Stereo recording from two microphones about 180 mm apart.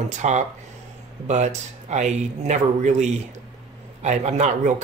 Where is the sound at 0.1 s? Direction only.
40° right (ahead or behind).